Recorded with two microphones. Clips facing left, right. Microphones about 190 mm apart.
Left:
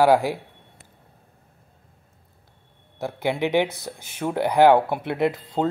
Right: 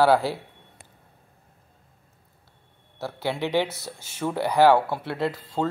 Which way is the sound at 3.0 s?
15° left (ahead or behind).